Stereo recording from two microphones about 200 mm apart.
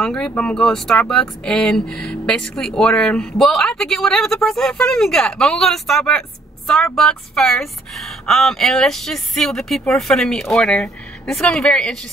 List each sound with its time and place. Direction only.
0.0 s speech: 5° left (ahead or behind)